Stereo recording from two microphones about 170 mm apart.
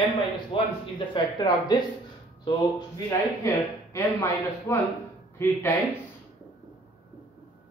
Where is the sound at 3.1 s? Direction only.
15° left (ahead or behind).